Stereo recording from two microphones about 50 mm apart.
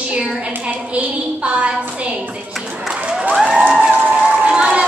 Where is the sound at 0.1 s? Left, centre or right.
Centre.